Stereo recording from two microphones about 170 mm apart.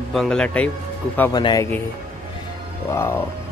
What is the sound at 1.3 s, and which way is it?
Speech, 25° left (ahead or behind).